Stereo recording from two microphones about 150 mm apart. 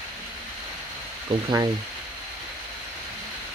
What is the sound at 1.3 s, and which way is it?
Speech, 35° right (ahead or behind).